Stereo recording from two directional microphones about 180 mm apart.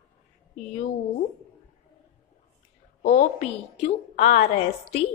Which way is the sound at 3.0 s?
40° left (ahead or behind).